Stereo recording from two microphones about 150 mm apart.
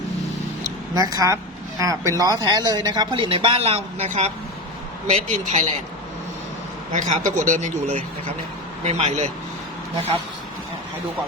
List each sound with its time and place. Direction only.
0.9 s speech: 25° right (ahead or behind); by 5.7 s 50° right (ahead or behind)
6.9 s speech: 55° right (ahead or behind)